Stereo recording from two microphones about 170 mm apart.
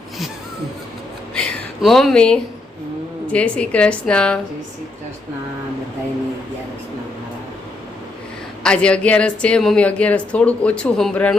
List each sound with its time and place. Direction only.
1.3 s a sound: 5° left (ahead or behind)
3.3 s speech: 5° left (ahead or behind)
8.6 s speech: 5° left (ahead or behind)